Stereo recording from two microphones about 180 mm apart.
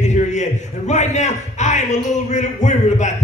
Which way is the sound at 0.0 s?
40° left (ahead or behind).